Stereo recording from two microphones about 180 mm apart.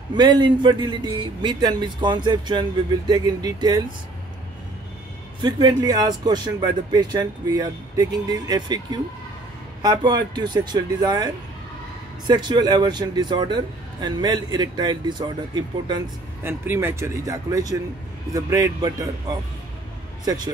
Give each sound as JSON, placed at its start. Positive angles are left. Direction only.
{"t": 0.1, "sound": "speech", "side_deg": -25}
{"t": 5.4, "sound": "speech", "side_deg": -25}
{"t": 16.4, "sound": "speech", "side_deg": -15}